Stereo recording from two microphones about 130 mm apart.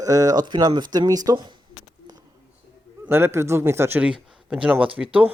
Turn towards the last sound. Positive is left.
turn(degrees=-10)  # may be behind; listen again after turning